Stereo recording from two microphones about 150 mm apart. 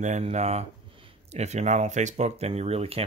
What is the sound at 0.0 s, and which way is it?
Speech, 50° right (ahead or behind).